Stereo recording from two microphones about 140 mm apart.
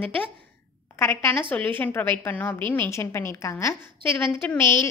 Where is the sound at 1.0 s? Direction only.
15° left (ahead or behind).